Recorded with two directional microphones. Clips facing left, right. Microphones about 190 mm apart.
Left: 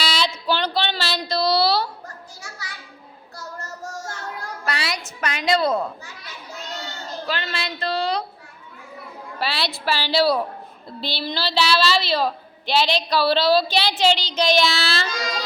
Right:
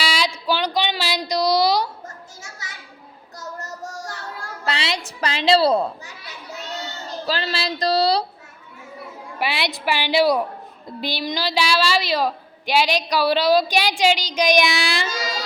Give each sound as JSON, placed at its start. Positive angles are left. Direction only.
{"t": 0.0, "sound": "a sound", "side_deg": -10}
{"t": 3.3, "sound": "child singing", "side_deg": -15}
{"t": 4.6, "sound": "a woman's voice", "side_deg": -25}
{"t": 7.3, "sound": "speech", "side_deg": -35}
{"t": 9.4, "sound": "a woman's voice", "side_deg": -15}